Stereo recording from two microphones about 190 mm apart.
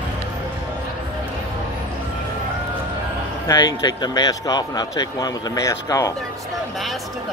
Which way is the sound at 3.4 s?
20° left (ahead or behind).